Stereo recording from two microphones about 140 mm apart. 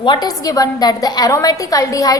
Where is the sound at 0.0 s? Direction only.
30° left (ahead or behind).